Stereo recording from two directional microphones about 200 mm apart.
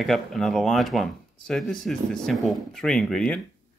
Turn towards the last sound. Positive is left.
turn(degrees=5)  # may be behind; listen again after turning